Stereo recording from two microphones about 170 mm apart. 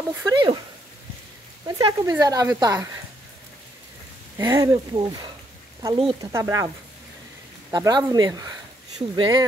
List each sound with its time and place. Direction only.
0.2 s speech: 25° right (ahead or behind)
1.7 s speech: 20° right (ahead or behind)
4.4 s speech: 15° right (ahead or behind); by 6.3 s 30° right (ahead or behind)
6.3 s speech: 15° right (ahead or behind)
7.7 s speech: 20° right (ahead or behind)